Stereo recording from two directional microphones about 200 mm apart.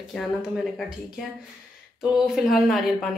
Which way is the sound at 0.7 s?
Centre (ahead or behind).